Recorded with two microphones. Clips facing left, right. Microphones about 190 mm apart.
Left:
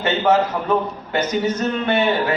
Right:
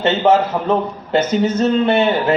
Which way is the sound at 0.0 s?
25° right (ahead or behind).